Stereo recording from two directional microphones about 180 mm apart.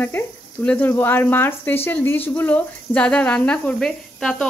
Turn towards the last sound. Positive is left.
turn(degrees=5)  # may be behind; listen again after turning